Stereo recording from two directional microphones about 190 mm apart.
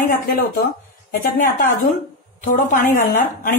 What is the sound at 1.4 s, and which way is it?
A woman's voice, 45° left (ahead or behind).